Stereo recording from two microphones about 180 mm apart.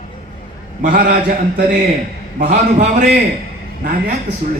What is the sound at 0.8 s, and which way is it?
Speech, 45° right (ahead or behind).